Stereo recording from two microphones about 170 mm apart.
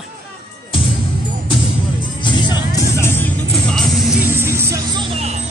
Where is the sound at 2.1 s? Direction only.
25° left (ahead or behind); by 4.2 s centre (ahead or behind).